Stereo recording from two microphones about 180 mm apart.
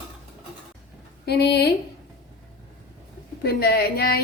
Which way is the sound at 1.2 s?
65° left (ahead or behind).